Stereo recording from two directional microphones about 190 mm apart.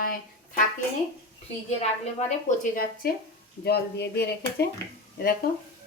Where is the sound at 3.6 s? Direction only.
55° left (ahead or behind).